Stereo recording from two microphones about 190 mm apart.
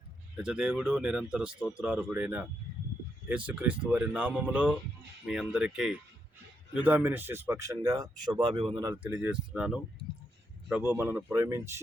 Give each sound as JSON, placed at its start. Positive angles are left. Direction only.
{"t": 0.3, "sound": "speech", "side_deg": -5}
{"t": 9.1, "sound": "speech", "side_deg": -5}